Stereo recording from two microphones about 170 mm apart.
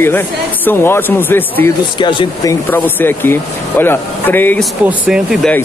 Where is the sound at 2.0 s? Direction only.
30° left (ahead or behind).